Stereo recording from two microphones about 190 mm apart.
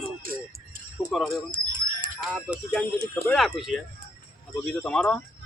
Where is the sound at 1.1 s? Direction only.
Centre (ahead or behind).